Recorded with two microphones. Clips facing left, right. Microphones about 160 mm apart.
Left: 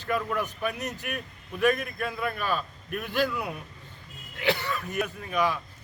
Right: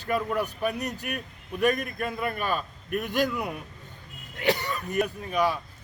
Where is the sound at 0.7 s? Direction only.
40° right (ahead or behind).